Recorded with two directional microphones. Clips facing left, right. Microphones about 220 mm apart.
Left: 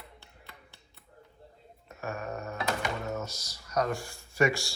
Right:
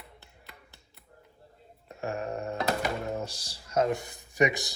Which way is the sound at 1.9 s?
30° right (ahead or behind).